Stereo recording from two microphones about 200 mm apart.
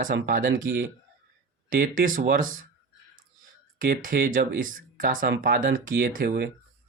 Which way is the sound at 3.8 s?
45° right (ahead or behind).